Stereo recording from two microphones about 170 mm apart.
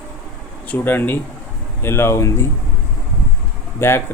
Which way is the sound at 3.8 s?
15° left (ahead or behind).